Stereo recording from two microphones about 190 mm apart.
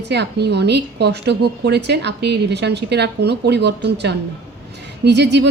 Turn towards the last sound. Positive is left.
turn(degrees=-65)  # may be behind; listen again after turning